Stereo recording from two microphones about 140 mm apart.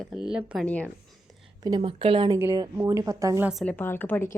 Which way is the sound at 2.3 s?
20° right (ahead or behind).